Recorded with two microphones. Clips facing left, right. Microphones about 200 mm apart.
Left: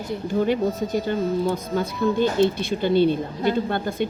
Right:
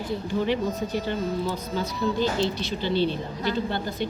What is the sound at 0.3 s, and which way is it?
A woman's voice, 45° left (ahead or behind).